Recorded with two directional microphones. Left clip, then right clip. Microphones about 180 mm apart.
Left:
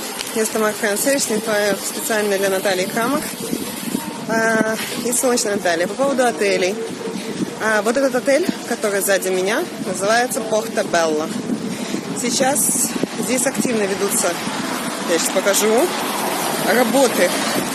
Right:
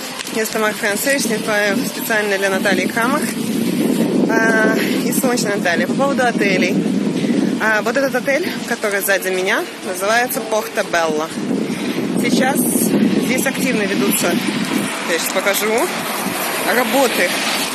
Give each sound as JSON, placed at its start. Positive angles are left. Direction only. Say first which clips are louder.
{"t": 0.4, "sound": "speech", "louder": "right 1 dB", "side_deg": 5}
{"t": 4.3, "sound": "speech", "louder": "right 1 dB", "side_deg": 5}
{"t": 16.6, "sound": "speech", "louder": "even", "side_deg": 15}